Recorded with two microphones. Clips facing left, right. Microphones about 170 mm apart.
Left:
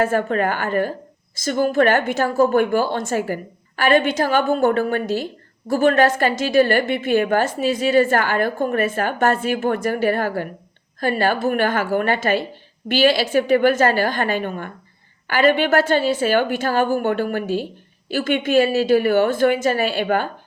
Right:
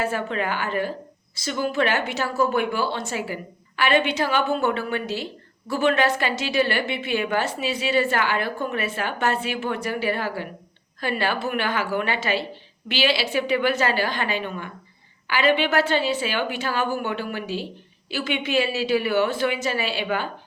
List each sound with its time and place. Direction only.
0.0 s speech: 50° left (ahead or behind)